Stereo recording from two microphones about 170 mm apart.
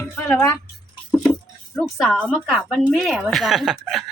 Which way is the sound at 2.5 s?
Centre (ahead or behind).